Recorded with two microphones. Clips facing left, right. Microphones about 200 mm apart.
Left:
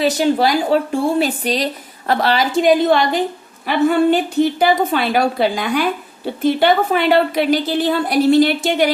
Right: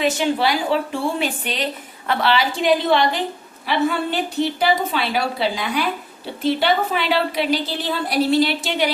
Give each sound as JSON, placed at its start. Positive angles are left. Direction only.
{"t": 0.0, "sound": "a woman's voice", "side_deg": 40}